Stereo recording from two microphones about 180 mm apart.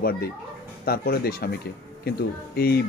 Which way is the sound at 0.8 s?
60° left (ahead or behind).